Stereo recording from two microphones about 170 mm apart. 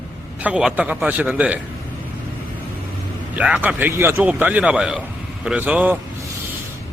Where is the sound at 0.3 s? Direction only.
10° right (ahead or behind).